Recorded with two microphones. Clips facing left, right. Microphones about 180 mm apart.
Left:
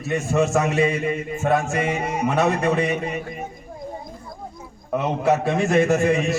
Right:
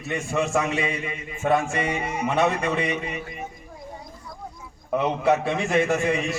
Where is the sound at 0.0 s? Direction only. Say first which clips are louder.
Left 5 dB; 45° left (ahead or behind).